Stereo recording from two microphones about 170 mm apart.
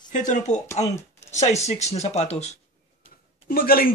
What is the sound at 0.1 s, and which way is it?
Speech, 45° left (ahead or behind).